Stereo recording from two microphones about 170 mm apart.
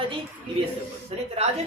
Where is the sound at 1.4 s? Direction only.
40° right (ahead or behind).